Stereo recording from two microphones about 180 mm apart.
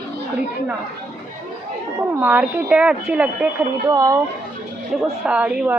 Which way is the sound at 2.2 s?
10° right (ahead or behind).